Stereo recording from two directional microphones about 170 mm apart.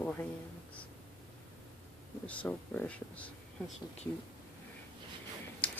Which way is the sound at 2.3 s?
10° left (ahead or behind).